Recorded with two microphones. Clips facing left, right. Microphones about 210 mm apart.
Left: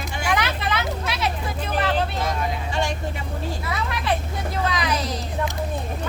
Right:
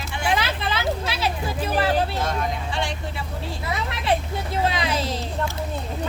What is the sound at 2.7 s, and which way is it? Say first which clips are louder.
Speech: left 2 dB; 45° left (ahead or behind).